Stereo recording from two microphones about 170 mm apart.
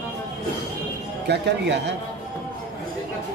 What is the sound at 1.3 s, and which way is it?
Speech, 85° right.